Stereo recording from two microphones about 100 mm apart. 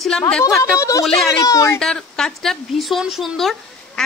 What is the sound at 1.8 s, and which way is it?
Speech, 5° left (ahead or behind).